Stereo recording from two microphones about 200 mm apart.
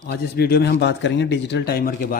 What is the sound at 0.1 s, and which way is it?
Speech, 50° left (ahead or behind).